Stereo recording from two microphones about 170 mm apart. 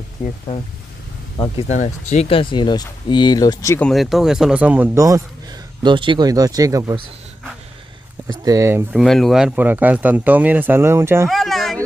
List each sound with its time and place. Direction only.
0.2 s speech: 45° left (ahead or behind)
1.4 s speech: 40° left (ahead or behind); by 3.8 s 20° left (ahead or behind)
3.8 s speech: centre (ahead or behind)
4.9 s speech: 20° right (ahead or behind)
8.3 s speech: 20° right (ahead or behind)
8.9 s speech: centre (ahead or behind); by 11.2 s 15° right (ahead or behind)
11.2 s a sound: centre (ahead or behind)